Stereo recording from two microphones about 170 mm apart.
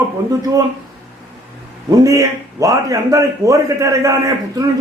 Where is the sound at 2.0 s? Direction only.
20° right (ahead or behind).